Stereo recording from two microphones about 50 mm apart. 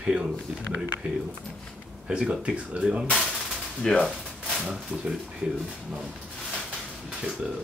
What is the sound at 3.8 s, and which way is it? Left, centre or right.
Speech, centre.